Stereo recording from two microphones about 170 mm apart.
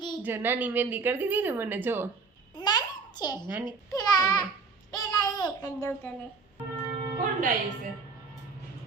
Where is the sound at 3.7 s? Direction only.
20° left (ahead or behind).